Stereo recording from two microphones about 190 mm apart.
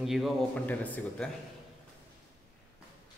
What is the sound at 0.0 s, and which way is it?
Speech, centre (ahead or behind).